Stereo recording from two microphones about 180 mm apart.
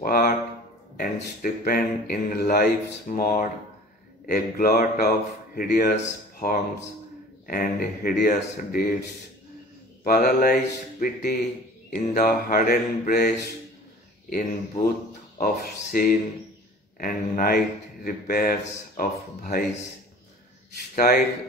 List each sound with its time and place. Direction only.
0.0 s a sound: 55° left (ahead or behind)
1.4 s speech: 50° left (ahead or behind)
10.0 s speech: 55° left (ahead or behind)
14.3 s speech: 50° left (ahead or behind)
20.9 s speech: 55° left (ahead or behind)